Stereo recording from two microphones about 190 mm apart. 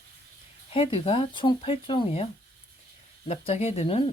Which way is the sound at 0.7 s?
30° left (ahead or behind).